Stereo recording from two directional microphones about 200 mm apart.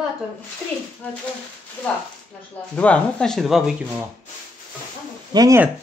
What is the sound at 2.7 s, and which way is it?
Speech, 5° left (ahead or behind).